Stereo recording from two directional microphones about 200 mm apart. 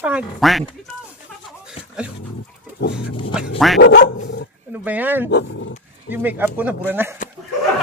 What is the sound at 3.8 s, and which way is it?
Speech, 55° left (ahead or behind).